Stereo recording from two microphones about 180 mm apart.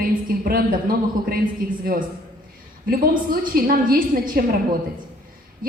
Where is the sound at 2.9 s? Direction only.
55° right (ahead or behind).